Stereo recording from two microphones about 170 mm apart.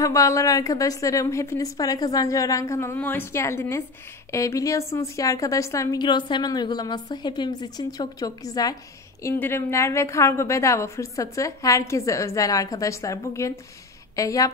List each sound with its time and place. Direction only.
0.0 s a woman's voice: 20° left (ahead or behind)